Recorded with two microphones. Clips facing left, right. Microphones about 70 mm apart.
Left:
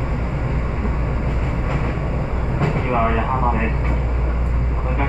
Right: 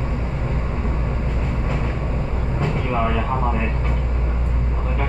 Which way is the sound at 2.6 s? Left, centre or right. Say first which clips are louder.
Left 3 dB; left.